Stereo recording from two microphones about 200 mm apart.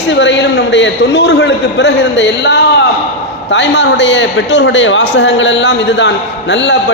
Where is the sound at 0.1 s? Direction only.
60° left (ahead or behind).